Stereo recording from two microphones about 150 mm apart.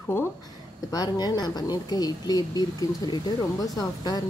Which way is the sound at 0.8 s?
25° left (ahead or behind).